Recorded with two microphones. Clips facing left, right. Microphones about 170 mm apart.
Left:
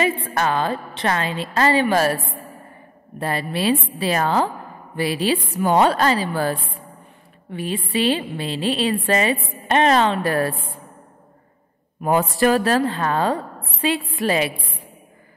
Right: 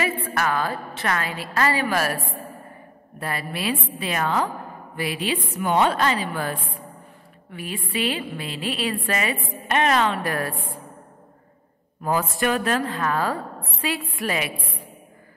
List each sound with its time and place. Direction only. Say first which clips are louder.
0.0 s a woman's voice: left 4 dB; 25° left (ahead or behind)
3.2 s a woman's voice: left 6 dB; 30° left (ahead or behind)
12.0 s a woman's voice: left 5 dB; 25° left (ahead or behind)